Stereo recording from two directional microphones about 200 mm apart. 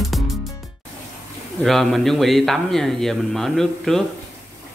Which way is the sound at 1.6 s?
Centre (ahead or behind).